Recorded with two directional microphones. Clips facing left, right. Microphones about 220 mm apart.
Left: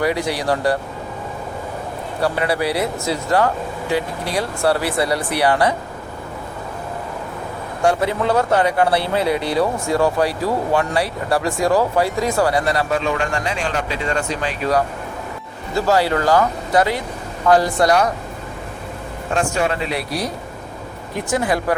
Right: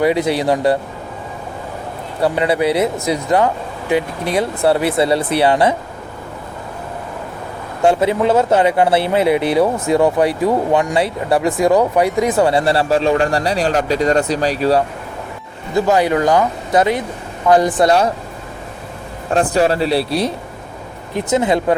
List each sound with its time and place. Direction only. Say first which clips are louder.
0.0 s speech: right 5 dB; 20° right (ahead or behind)
2.2 s speech: right 4 dB; 20° right (ahead or behind)
7.8 s speech: right 4 dB; 20° right (ahead or behind)
15.7 s speech: right 3 dB; 20° right (ahead or behind)
19.3 s speech: right 5 dB; 35° right (ahead or behind)